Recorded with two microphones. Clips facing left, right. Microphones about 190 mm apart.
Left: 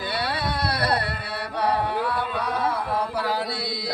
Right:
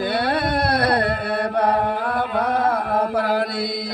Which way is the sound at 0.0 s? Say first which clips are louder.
Right 7 dB; 50° right (ahead or behind).